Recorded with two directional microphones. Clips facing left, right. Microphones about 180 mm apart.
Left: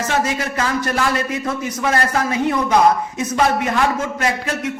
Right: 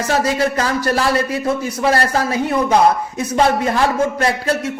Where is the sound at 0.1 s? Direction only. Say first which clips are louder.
Right 7 dB; 35° right (ahead or behind).